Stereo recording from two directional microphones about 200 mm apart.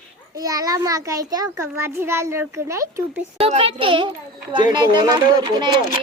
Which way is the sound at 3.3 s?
30° right (ahead or behind).